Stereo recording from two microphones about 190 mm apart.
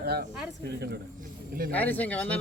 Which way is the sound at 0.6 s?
60° right (ahead or behind).